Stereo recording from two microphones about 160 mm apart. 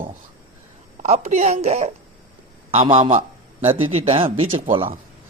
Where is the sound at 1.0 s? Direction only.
45° right (ahead or behind).